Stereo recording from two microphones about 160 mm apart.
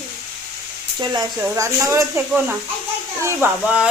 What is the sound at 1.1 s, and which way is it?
Speech, 20° right (ahead or behind).